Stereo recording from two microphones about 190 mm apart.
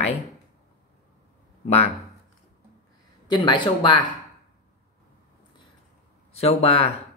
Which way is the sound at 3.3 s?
25° left (ahead or behind).